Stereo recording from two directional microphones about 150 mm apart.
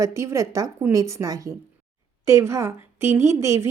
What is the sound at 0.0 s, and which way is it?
A woman's voice, 20° right (ahead or behind).